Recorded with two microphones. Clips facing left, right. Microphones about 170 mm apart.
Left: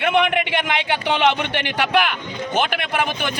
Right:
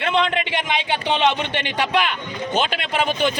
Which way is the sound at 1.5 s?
60° left (ahead or behind).